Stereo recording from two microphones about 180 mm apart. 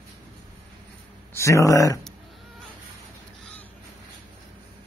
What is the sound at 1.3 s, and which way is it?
Speech, 15° left (ahead or behind).